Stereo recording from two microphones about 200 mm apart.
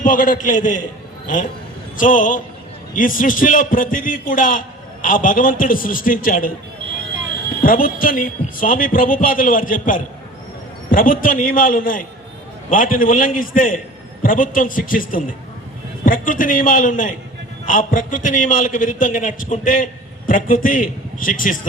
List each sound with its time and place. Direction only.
0.0 s a man's voice: 40° left (ahead or behind)
2.0 s a man's voice: 40° left (ahead or behind)
7.6 s a man's voice: 45° left (ahead or behind)